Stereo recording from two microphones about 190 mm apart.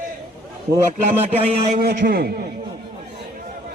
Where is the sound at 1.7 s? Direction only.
55° right (ahead or behind).